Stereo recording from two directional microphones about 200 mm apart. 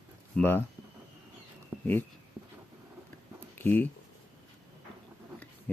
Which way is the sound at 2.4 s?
20° right (ahead or behind).